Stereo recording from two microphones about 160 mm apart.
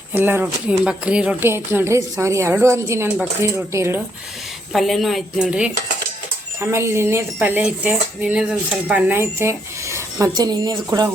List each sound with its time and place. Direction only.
0.1 s speech: 10° right (ahead or behind)
4.7 s speech: centre (ahead or behind)
6.6 s speech: 15° right (ahead or behind)